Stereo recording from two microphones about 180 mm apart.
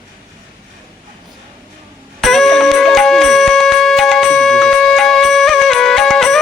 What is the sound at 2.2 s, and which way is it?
Music, centre (ahead or behind).